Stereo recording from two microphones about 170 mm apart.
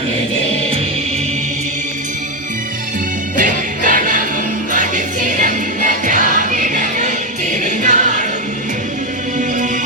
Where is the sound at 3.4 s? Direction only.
50° right (ahead or behind).